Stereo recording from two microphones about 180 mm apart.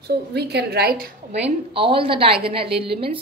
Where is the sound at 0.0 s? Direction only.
65° right (ahead or behind).